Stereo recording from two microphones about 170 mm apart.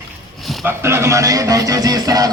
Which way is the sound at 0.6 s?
15° right (ahead or behind).